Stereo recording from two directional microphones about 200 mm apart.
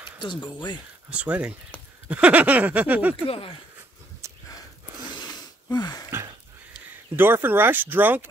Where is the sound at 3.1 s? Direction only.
25° left (ahead or behind).